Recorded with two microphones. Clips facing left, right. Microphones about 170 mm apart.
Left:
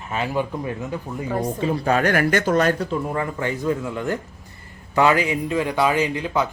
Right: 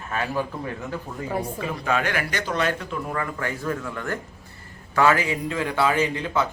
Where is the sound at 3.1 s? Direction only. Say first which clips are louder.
Left 4 dB; 20° left (ahead or behind).